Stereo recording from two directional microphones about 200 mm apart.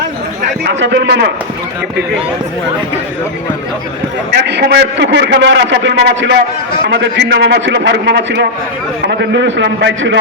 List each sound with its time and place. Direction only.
0.6 s a man's voice: 60° right (ahead or behind)
4.4 s a man's voice: 60° right (ahead or behind)